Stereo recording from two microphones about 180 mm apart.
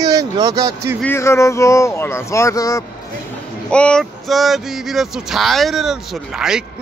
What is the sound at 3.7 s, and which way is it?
Speech, 5° left (ahead or behind).